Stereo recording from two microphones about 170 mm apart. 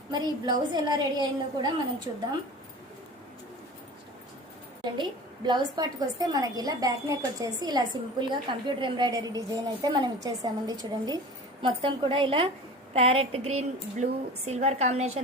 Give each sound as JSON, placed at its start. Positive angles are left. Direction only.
{"t": 0.1, "sound": "a woman's voice", "side_deg": -25}
{"t": 4.8, "sound": "a woman's voice", "side_deg": -25}